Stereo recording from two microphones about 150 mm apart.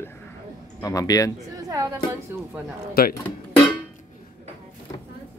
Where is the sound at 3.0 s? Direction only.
90° left.